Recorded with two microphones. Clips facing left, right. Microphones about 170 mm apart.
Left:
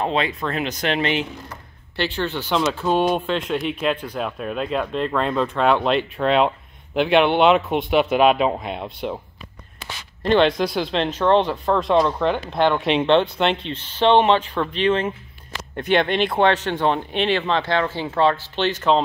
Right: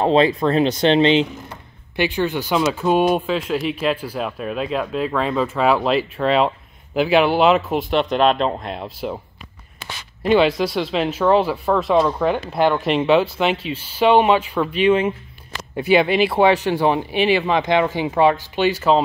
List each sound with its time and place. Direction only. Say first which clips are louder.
0.0 s speech: right 7 dB; 35° right (ahead or behind)
2.0 s speech: right 4 dB; 10° right (ahead or behind)
10.2 s speech: right 1 dB; 5° right (ahead or behind)